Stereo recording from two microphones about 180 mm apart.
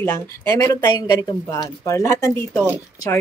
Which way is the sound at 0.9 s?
20° left (ahead or behind).